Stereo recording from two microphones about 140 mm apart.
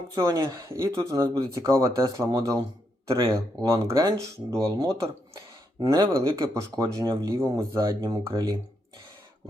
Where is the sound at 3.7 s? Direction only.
25° right (ahead or behind).